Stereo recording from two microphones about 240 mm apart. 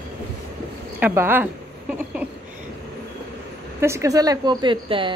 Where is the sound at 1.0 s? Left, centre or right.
Centre.